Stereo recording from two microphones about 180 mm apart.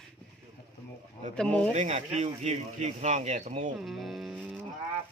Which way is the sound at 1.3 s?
5° left (ahead or behind).